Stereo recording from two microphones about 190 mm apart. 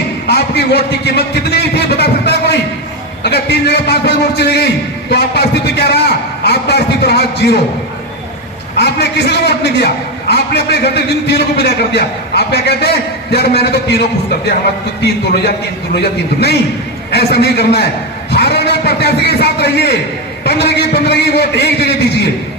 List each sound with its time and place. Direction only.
0.3 s a man's voice: 60° left (ahead or behind)
8.7 s a man's voice: 60° left (ahead or behind)
15.0 s a man's voice: 60° left (ahead or behind)
17.1 s a man's voice: 60° left (ahead or behind)